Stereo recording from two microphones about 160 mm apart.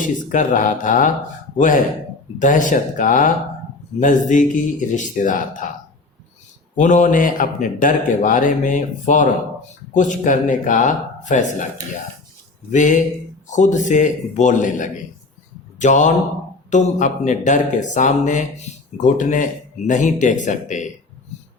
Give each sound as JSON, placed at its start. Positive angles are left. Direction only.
{"t": 0.0, "sound": "speech", "side_deg": 55}
{"t": 6.7, "sound": "speech", "side_deg": 50}
{"t": 12.7, "sound": "speech", "side_deg": 50}